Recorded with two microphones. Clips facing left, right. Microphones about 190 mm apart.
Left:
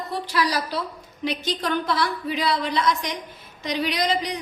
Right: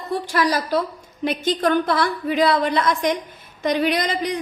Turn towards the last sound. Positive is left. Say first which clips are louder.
# right 3 dB
turn(degrees=-55)  # may be behind; listen again after turning